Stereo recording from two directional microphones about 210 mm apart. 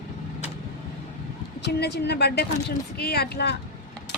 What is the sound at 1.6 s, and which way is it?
Speech, 55° left (ahead or behind).